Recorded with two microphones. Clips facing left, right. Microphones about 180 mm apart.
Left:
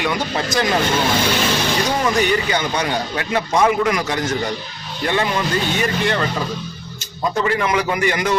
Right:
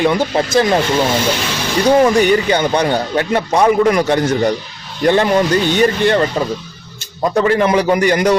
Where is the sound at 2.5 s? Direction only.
35° right (ahead or behind).